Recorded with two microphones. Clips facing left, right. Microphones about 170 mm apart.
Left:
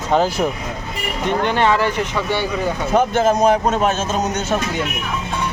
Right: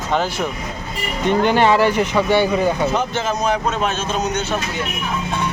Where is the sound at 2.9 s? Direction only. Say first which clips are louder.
Left 6 dB; 50° left (ahead or behind).